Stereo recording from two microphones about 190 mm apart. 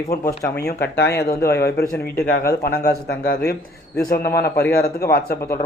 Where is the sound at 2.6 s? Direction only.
55° left (ahead or behind).